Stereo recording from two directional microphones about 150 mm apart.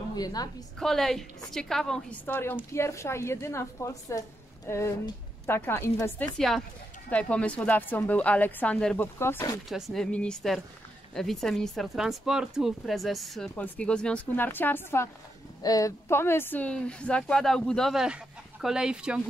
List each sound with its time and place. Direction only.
0.1 s a woman's voice: 25° left (ahead or behind)
0.7 s a woman's voice: 5° left (ahead or behind)
6.3 s a woman's voice: centre (ahead or behind); by 9.6 s 20° left (ahead or behind)
9.7 s speech: centre (ahead or behind)